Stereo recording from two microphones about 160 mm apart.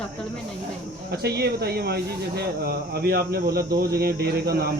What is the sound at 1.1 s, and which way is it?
Speech, 90° right.